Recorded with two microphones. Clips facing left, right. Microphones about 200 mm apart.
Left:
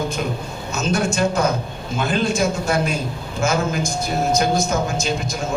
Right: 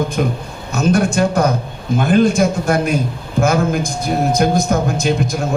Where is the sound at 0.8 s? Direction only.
55° right (ahead or behind).